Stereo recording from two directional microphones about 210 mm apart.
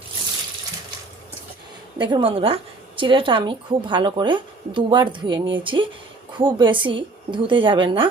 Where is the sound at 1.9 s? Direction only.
20° right (ahead or behind).